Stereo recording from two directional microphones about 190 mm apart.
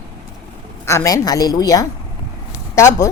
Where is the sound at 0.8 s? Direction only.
15° left (ahead or behind).